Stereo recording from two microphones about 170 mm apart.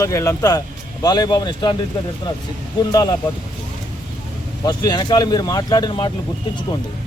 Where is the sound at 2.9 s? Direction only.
20° left (ahead or behind).